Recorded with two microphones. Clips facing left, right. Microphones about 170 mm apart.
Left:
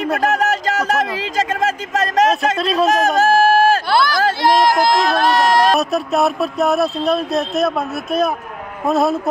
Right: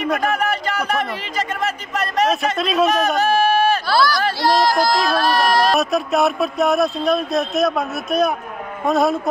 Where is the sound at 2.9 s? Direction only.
90° left.